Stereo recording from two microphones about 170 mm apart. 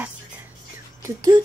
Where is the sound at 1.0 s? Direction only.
20° right (ahead or behind).